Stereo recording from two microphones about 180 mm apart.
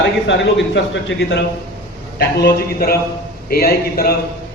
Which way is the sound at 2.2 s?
65° left (ahead or behind).